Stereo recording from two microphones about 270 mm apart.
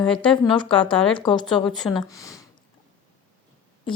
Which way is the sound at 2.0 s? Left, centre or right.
Centre.